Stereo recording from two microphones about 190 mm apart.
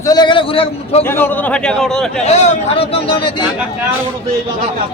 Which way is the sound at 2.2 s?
35° left (ahead or behind).